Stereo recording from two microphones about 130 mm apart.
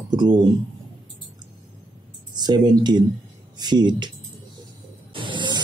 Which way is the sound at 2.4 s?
35° right (ahead or behind).